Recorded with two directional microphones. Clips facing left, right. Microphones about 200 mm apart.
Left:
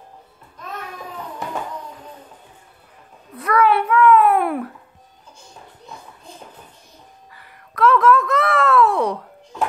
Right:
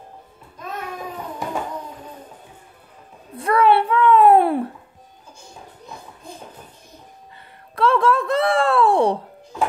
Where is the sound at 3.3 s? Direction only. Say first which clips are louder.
Right 1 dB; 30° right (ahead or behind).